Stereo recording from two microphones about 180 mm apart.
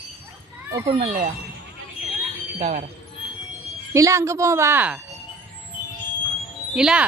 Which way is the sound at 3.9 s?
15° right (ahead or behind).